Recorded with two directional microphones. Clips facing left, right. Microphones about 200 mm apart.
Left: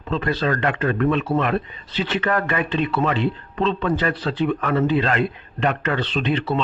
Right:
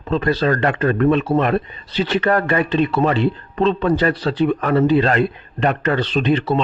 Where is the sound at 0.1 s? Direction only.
40° right (ahead or behind).